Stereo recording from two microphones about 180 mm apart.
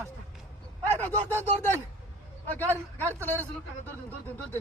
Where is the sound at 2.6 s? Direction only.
10° left (ahead or behind).